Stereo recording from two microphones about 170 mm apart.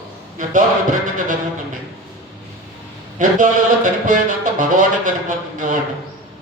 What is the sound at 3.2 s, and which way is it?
A man's voice, 50° right (ahead or behind).